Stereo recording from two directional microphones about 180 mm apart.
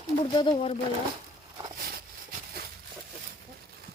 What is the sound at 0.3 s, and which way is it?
Speech, 30° left (ahead or behind).